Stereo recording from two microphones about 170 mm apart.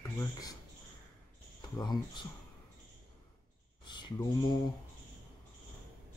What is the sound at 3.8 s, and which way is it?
Speech, 25° left (ahead or behind).